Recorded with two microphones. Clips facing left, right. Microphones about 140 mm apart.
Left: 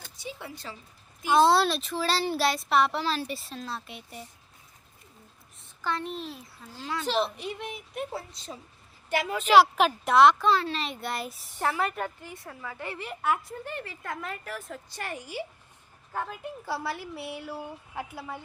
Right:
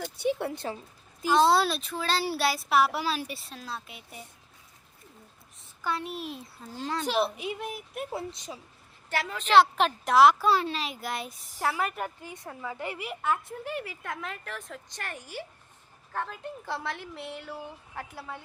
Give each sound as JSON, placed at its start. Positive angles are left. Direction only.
{"t": 0.2, "sound": "a woman's voice", "side_deg": -60}
{"t": 1.2, "sound": "speech", "side_deg": 5}
{"t": 5.8, "sound": "a woman's voice", "side_deg": -10}
{"t": 6.6, "sound": "speech", "side_deg": -30}
{"t": 7.0, "sound": "a woman's voice", "side_deg": -10}
{"t": 8.1, "sound": "a woman's voice", "side_deg": -15}
{"t": 9.0, "sound": "speech", "side_deg": 15}
{"t": 12.2, "sound": "a woman's voice", "side_deg": -20}
{"t": 13.5, "sound": "a woman's voice", "side_deg": -5}